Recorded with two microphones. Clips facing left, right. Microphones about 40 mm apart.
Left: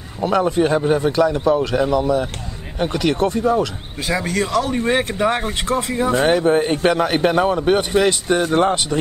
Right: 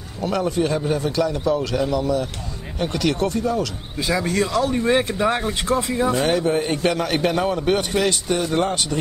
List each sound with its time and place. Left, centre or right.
0.2 s a man's voice: left
4.7 s a man's voice: left
8.4 s a man's voice: left